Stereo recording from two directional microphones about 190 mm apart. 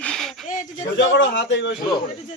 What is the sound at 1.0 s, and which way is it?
Speech, 70° left (ahead or behind).